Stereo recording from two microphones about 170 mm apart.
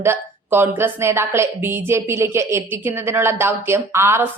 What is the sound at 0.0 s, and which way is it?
A woman's voice, 10° right (ahead or behind).